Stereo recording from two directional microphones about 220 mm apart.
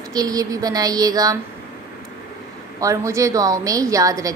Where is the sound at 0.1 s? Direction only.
15° right (ahead or behind).